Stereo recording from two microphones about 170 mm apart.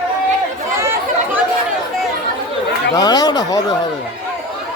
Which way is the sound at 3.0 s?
25° left (ahead or behind).